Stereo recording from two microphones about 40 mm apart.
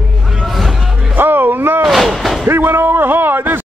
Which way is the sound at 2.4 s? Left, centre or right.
Right.